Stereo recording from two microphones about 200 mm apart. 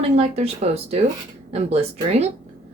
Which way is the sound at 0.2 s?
35° right (ahead or behind).